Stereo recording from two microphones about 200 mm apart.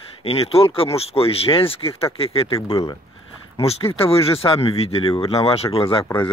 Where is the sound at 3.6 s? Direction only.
30° left (ahead or behind).